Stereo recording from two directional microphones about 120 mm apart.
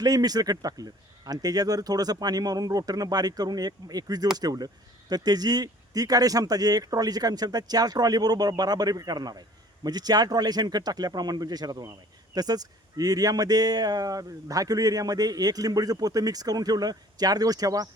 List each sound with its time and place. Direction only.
0.0 s speech: 35° right (ahead or behind)